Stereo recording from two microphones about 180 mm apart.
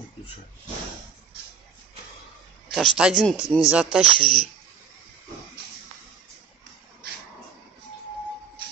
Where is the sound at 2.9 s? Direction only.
5° right (ahead or behind).